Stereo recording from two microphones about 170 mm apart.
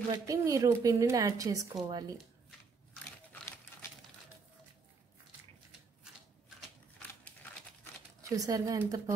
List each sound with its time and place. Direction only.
0.1 s a woman's voice: 20° right (ahead or behind)
8.2 s a woman's voice: 20° right (ahead or behind)